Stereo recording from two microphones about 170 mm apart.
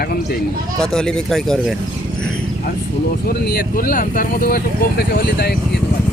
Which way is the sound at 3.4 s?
60° left (ahead or behind).